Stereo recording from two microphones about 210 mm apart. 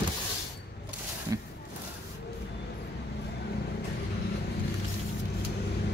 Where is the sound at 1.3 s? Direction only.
15° right (ahead or behind).